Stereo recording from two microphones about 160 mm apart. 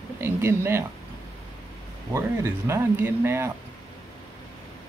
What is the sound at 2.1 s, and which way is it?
Speech, 15° right (ahead or behind).